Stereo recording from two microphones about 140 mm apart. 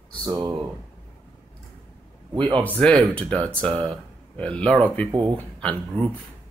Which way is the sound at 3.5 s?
40° right (ahead or behind).